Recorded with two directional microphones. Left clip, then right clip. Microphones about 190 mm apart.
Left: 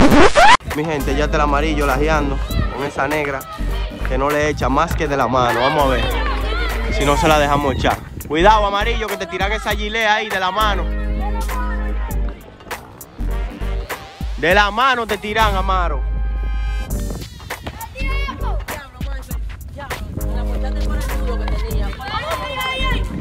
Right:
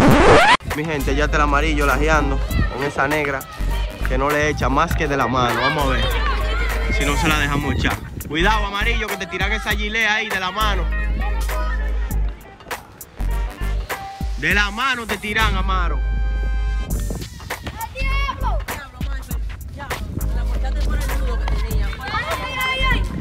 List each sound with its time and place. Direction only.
0.0 s scratch: 5° right (ahead or behind)
0.7 s speech: 10° left (ahead or behind)
6.0 s music: 40° left (ahead or behind)
6.9 s speech: 15° left (ahead or behind)
11.3 s music: centre (ahead or behind)
14.4 s speech: 10° left (ahead or behind)
17.7 s music: centre (ahead or behind)
22.5 s music: 25° left (ahead or behind)